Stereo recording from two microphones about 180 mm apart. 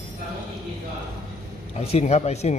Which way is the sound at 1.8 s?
35° left (ahead or behind).